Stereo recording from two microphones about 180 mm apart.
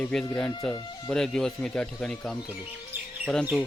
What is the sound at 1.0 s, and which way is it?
Speech, 5° left (ahead or behind).